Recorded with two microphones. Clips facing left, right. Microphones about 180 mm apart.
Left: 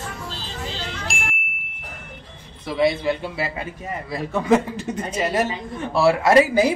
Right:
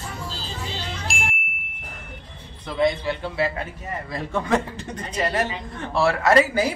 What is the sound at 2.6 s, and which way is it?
Speech, 5° left (ahead or behind).